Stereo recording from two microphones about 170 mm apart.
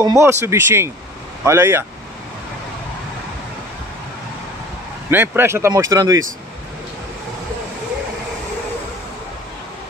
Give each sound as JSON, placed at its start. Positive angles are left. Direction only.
{"t": 0.0, "sound": "speech", "side_deg": -15}
{"t": 5.1, "sound": "speech", "side_deg": -10}